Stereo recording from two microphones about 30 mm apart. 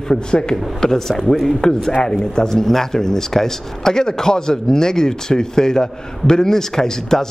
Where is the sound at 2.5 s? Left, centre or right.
Centre.